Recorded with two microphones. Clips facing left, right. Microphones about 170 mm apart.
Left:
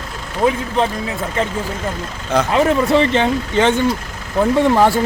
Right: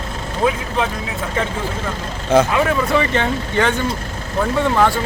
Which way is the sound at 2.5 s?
25° left (ahead or behind).